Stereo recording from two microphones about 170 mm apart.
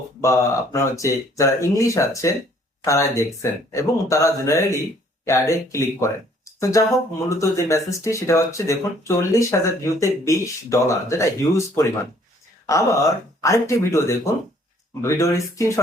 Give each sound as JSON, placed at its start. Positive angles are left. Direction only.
{"t": 0.2, "sound": "speech", "side_deg": 20}